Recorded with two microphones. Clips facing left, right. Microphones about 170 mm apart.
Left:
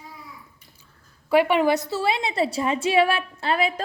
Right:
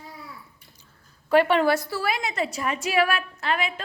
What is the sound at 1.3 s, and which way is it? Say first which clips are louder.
A woman's voice: left 1 dB; 10° left (ahead or behind).